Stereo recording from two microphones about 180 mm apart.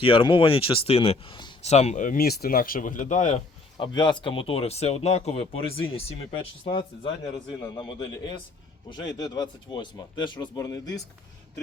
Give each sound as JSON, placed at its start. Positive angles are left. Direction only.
{"t": 0.0, "sound": "speech", "side_deg": 30}
{"t": 1.7, "sound": "speech", "side_deg": 40}
{"t": 3.8, "sound": "speech", "side_deg": 25}